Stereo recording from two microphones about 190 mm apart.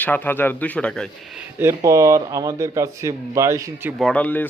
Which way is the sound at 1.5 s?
15° right (ahead or behind).